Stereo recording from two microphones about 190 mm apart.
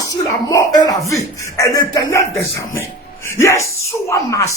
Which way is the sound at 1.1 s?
15° left (ahead or behind).